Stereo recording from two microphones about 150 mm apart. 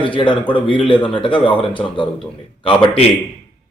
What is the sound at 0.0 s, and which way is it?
Speech, 35° left (ahead or behind).